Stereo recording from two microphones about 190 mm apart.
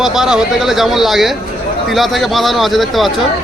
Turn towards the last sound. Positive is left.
turn(degrees=0)  # may be behind; listen again after turning